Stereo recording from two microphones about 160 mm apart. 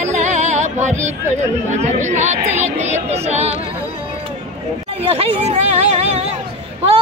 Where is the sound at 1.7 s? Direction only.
45° right (ahead or behind).